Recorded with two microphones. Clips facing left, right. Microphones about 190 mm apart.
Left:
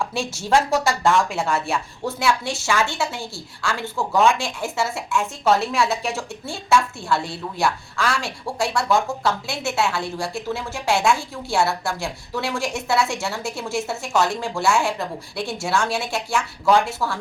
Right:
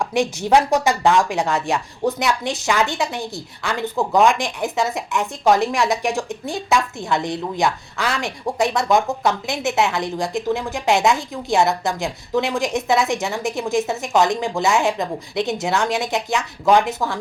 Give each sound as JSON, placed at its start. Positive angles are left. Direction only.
{"t": 0.0, "sound": "a woman's voice", "side_deg": -15}